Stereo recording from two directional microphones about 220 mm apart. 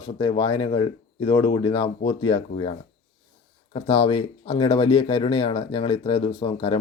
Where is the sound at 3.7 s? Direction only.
25° left (ahead or behind).